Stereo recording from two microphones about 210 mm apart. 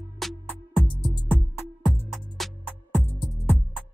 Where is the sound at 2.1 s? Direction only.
Centre (ahead or behind).